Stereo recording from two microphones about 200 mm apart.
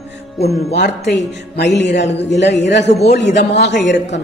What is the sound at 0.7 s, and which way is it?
A man's voice, 60° left (ahead or behind).